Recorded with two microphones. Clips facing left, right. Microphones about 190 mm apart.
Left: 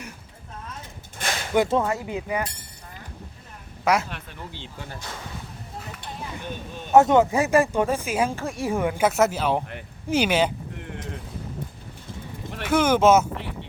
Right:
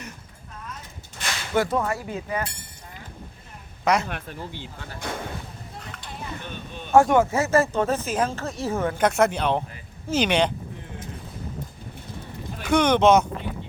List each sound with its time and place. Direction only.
1.2 s a sound: 50° left (ahead or behind)
1.5 s speech: 20° left (ahead or behind)
3.8 s speech: 5° left (ahead or behind)
4.9 s speech: 55° right (ahead or behind)
5.9 s a sound: 5° left (ahead or behind)
6.9 s speech: 20° left (ahead or behind); by 10.5 s 5° left (ahead or behind)
12.6 s speech: 5° left (ahead or behind)